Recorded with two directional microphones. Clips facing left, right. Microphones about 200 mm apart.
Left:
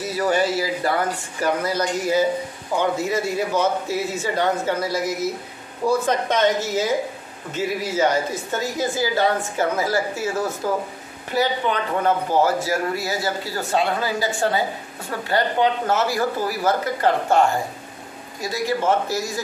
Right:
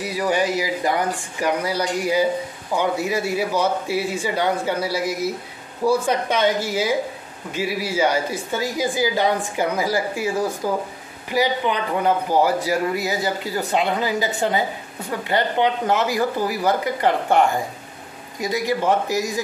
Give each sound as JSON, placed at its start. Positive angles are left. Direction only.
{"t": 0.0, "sound": "a man's voice", "side_deg": -15}